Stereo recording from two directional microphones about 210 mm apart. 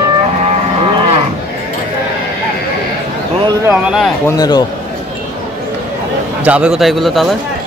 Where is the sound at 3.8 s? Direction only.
Centre (ahead or behind).